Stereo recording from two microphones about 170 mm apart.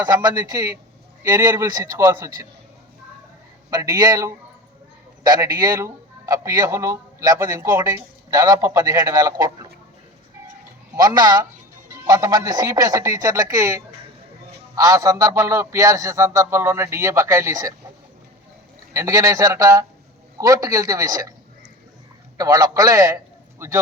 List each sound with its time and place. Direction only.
0.0 s a man's voice: 20° right (ahead or behind)
3.7 s a man's voice: 20° right (ahead or behind)
10.9 s a man's voice: 25° right (ahead or behind)
18.9 s a man's voice: 20° right (ahead or behind)
22.4 s a man's voice: 20° right (ahead or behind)